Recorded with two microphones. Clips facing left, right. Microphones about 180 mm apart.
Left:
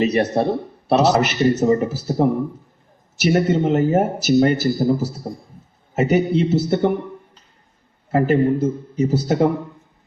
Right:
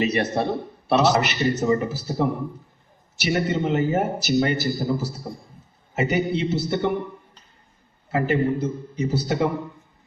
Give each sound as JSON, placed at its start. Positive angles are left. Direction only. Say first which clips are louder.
{"t": 0.0, "sound": "a man's voice", "louder": "left 5 dB", "side_deg": 40}
{"t": 3.3, "sound": "a man's voice", "louder": "left 4 dB", "side_deg": 40}
{"t": 8.1, "sound": "a man's voice", "louder": "left 5 dB", "side_deg": 45}